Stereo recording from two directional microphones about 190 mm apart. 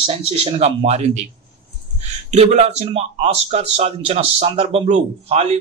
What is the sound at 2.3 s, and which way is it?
A man's voice, 35° right (ahead or behind).